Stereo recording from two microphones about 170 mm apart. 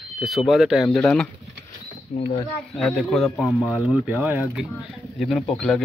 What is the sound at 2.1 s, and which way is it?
Speech, 45° left (ahead or behind).